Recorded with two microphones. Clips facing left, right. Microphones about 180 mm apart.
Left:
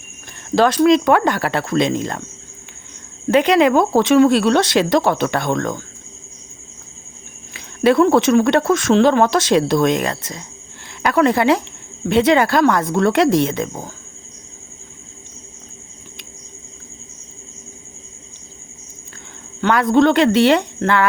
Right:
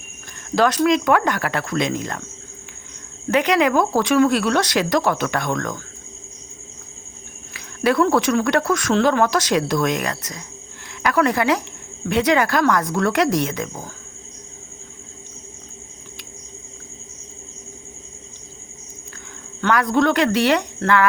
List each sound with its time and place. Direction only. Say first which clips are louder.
0.5 s speech: left 4 dB; 30° left (ahead or behind)
3.2 s speech: left 4 dB; 30° left (ahead or behind)
7.5 s speech: left 5 dB; 25° left (ahead or behind)
19.6 s speech: left 4 dB; 25° left (ahead or behind)